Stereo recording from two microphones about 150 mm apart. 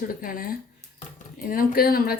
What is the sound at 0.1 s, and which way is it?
Speech, 70° left (ahead or behind).